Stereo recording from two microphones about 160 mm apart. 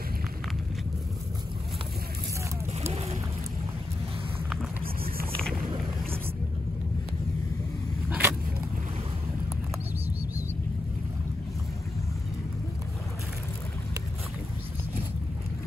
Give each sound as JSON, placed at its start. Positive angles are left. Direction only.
{"t": 2.8, "sound": "boat", "side_deg": -40}
{"t": 8.1, "sound": "vehicle", "side_deg": -15}